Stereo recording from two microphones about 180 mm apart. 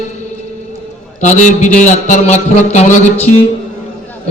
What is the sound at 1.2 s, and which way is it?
A man's voice, 40° left (ahead or behind).